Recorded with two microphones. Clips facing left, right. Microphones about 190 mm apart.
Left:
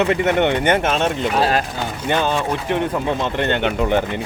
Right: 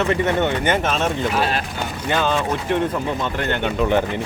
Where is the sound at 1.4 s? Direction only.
40° left (ahead or behind).